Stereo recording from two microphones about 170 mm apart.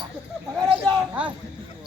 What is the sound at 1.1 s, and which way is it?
Speech, 10° right (ahead or behind).